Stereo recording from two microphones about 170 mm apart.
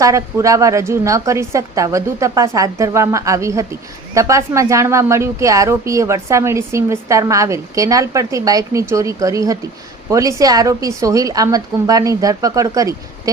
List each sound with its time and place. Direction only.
0.0 s a woman's voice: 20° right (ahead or behind)